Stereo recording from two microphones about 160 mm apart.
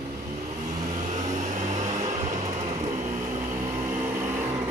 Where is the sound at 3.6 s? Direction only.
15° right (ahead or behind).